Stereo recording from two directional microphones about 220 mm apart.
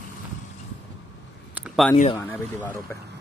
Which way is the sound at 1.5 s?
Centre (ahead or behind).